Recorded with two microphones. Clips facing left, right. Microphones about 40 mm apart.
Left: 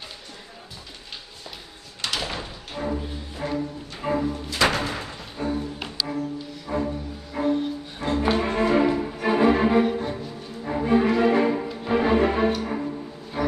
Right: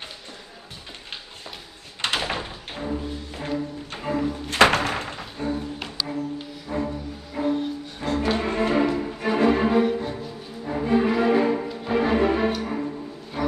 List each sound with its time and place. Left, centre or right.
2.0 s door: right
2.9 s music: centre
4.1 s music: left
4.5 s music: right
5.4 s music: centre